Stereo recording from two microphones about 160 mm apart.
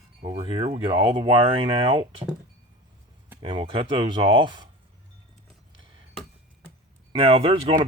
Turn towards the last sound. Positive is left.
turn(degrees=-35)  # may be behind; listen again after turning